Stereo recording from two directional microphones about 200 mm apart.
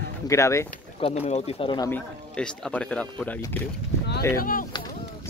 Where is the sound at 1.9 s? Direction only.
5° left (ahead or behind).